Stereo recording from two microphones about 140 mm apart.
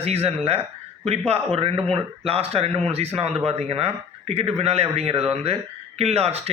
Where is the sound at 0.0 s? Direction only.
45° right (ahead or behind).